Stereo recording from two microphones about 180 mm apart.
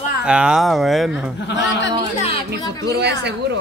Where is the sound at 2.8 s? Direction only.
70° right (ahead or behind).